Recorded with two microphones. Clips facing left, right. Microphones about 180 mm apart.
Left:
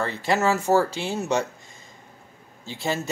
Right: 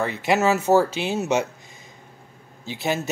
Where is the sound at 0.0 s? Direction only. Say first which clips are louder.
Right 2 dB; 20° right (ahead or behind).